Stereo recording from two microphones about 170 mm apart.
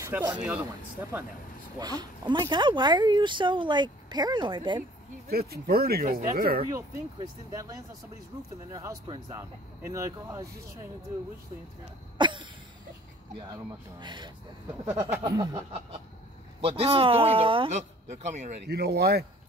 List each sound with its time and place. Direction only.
0.0 s a man's voice: 15° right (ahead or behind)
1.8 s speech: 25° right (ahead or behind)
5.3 s speech: 65° right (ahead or behind)
6.7 s speech: 20° right (ahead or behind)
8.7 s speech: 25° right (ahead or behind)
12.2 s throat clearing: 30° right (ahead or behind)
13.9 s speech: 25° right (ahead or behind)
16.6 s speech: 35° right (ahead or behind)
18.7 s speech: 70° right (ahead or behind)